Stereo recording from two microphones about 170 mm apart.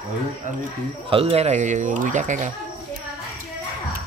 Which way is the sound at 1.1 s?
35° right (ahead or behind).